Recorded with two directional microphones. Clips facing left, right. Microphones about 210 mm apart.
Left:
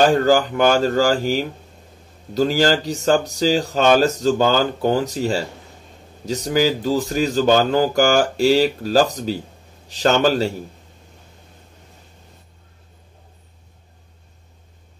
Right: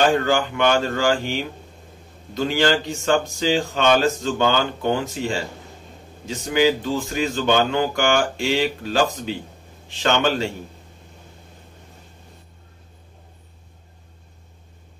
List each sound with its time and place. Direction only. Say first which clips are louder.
0.0 s speech: left 4 dB; 40° left (ahead or behind)